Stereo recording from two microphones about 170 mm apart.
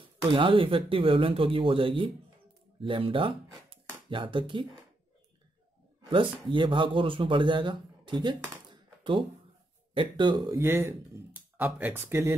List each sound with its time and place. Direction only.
0.3 s speech: 30° right (ahead or behind)
6.0 s speech: 30° right (ahead or behind)
10.6 s speech: 15° right (ahead or behind)